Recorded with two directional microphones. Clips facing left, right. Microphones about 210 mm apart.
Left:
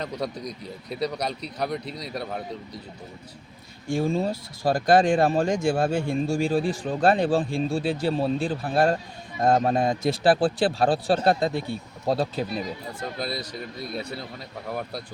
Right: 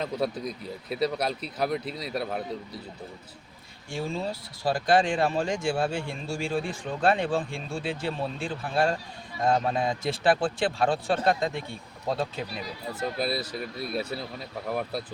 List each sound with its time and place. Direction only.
0.0 s speech: 5° right (ahead or behind)
3.8 s speech: 45° left (ahead or behind)
12.9 s speech: 5° right (ahead or behind)